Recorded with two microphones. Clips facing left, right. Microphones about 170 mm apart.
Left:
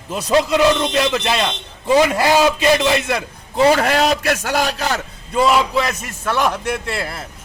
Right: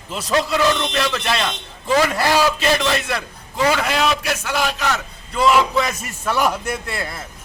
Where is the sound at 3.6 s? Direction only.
35° left (ahead or behind).